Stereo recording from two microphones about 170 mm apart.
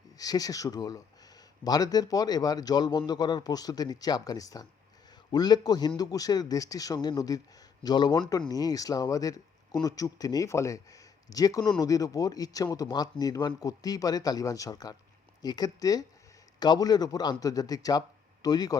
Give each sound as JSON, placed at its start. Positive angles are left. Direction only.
{"t": 0.2, "sound": "speech", "side_deg": 20}